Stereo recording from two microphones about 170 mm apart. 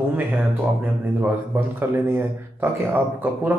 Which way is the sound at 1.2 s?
10° right (ahead or behind).